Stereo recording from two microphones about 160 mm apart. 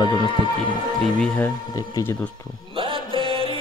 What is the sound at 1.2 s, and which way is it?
Speech, 5° left (ahead or behind).